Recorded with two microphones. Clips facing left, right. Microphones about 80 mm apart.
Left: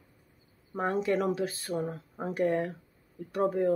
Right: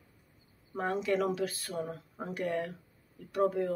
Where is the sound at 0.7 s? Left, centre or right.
Left.